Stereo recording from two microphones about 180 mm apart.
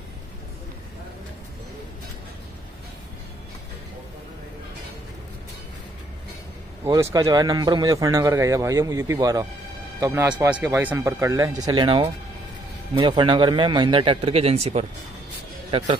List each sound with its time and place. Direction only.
6.8 s a man's voice: 15° right (ahead or behind); by 14.9 s 35° right (ahead or behind)